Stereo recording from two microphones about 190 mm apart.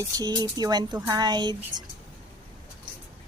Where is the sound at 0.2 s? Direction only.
20° right (ahead or behind).